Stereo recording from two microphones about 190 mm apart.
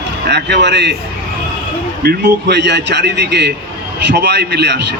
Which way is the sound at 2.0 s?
65° right (ahead or behind).